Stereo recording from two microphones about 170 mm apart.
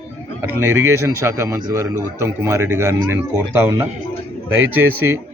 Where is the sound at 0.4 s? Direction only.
15° right (ahead or behind).